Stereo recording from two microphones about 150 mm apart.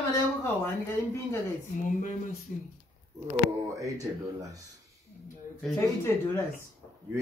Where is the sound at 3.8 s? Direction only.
20° right (ahead or behind).